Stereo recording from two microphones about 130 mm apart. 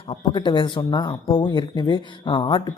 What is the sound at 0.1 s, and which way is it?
Speech, 35° left (ahead or behind).